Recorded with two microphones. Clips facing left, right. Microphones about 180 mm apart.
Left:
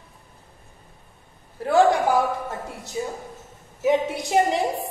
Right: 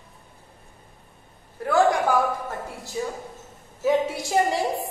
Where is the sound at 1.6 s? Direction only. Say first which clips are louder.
Left 2 dB; 25° left (ahead or behind).